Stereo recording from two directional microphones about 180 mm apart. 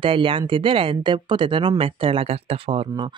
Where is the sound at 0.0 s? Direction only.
30° right (ahead or behind).